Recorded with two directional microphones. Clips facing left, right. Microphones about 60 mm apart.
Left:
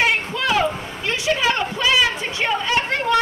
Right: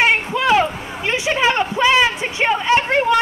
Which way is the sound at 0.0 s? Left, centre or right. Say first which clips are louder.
Right 4 dB; right.